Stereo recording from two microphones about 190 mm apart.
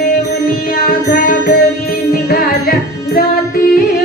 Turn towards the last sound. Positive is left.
turn(degrees=55)  # may be behind; listen again after turning